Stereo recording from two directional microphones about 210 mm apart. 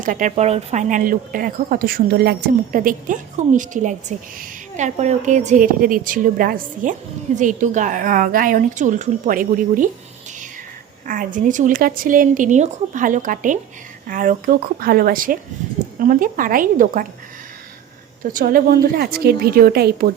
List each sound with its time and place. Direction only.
0.0 s speech: 35° right (ahead or behind)
11.0 s speech: 40° right (ahead or behind)
18.2 s a woman's voice: 40° right (ahead or behind)